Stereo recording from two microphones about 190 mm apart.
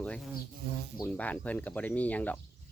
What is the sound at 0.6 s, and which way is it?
Speech, 55° right (ahead or behind).